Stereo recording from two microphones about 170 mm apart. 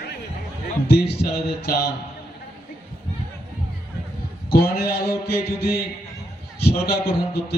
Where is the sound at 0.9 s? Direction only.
70° left (ahead or behind).